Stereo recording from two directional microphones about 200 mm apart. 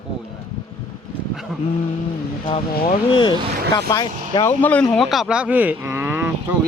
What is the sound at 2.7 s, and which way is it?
Speech, 50° left (ahead or behind).